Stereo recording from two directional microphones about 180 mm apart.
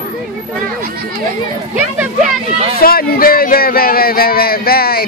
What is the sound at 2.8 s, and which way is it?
Music, 55° left (ahead or behind).